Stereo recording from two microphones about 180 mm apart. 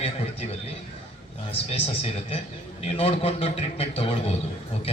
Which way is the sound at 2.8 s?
35° left (ahead or behind).